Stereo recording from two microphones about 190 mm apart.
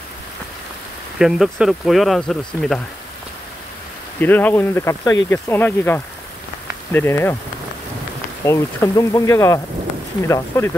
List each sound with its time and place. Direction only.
1.1 s speech: 5° right (ahead or behind)
4.2 s speech: 10° left (ahead or behind)
8.5 s speech: 15° left (ahead or behind)